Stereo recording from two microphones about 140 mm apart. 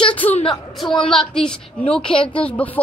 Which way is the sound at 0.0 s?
40° left (ahead or behind).